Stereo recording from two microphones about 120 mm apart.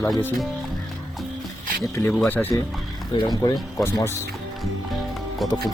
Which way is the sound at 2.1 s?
10° left (ahead or behind).